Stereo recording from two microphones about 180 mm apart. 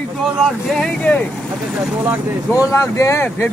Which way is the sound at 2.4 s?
20° left (ahead or behind).